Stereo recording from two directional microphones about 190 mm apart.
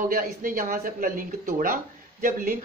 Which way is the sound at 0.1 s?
50° right (ahead or behind).